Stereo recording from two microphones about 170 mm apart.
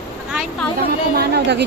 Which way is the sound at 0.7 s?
65° right (ahead or behind).